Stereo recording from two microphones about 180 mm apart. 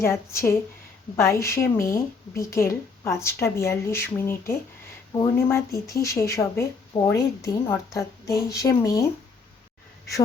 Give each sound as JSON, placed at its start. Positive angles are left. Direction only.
{"t": 0.0, "sound": "speech", "side_deg": 15}